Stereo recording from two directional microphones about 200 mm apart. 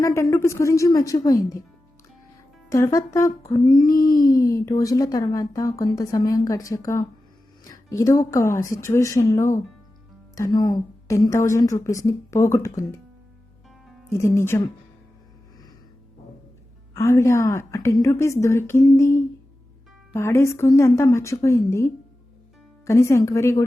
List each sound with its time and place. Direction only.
0.0 s a woman's voice: 15° left (ahead or behind)
2.6 s a woman's voice: 15° left (ahead or behind)
3.9 s a sound: 45° left (ahead or behind)
4.3 s a woman's voice: 15° left (ahead or behind)
14.1 s a woman's voice: 15° left (ahead or behind)
16.9 s a woman's voice: 15° left (ahead or behind)